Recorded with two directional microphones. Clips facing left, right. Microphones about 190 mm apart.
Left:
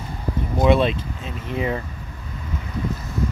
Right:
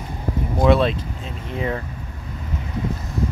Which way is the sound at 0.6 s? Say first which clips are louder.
Right 1 dB; centre (ahead or behind).